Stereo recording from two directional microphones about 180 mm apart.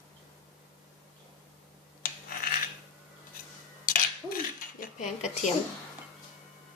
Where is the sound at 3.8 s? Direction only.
50° left (ahead or behind).